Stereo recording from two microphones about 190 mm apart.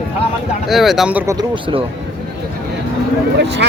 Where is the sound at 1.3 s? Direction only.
25° right (ahead or behind).